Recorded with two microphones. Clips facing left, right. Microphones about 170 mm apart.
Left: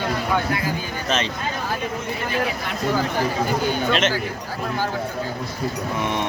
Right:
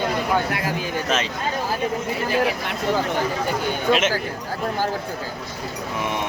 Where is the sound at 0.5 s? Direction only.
75° right (ahead or behind).